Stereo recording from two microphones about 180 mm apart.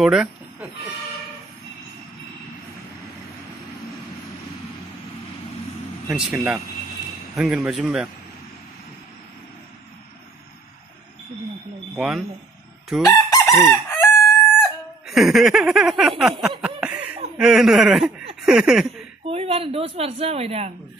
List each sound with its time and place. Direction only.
0.0 s chicken: 5° right (ahead or behind)
6.0 s a man's voice: 5° right (ahead or behind)
11.9 s speech: centre (ahead or behind)
13.0 s crowing: 20° left (ahead or behind)
15.0 s a sound: centre (ahead or behind)
17.4 s speech: centre (ahead or behind)
19.2 s speech: 35° right (ahead or behind)